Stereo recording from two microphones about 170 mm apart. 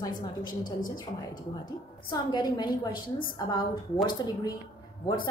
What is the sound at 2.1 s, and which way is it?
Speech, 25° left (ahead or behind).